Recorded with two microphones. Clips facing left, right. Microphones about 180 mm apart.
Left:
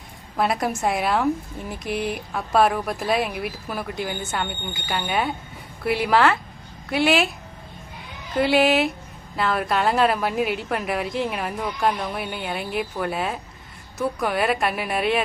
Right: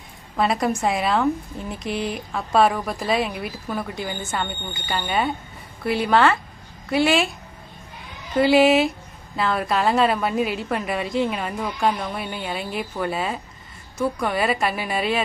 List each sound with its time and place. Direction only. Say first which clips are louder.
0.3 s a woman's voice: right 2 dB; centre (ahead or behind)
8.4 s a woman's voice: right 3 dB; centre (ahead or behind)